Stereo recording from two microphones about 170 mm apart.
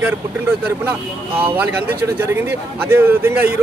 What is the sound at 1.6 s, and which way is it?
A man's voice, 10° right (ahead or behind).